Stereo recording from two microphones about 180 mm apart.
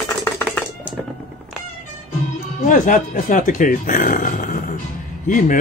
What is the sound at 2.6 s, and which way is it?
Speech, 45° left (ahead or behind).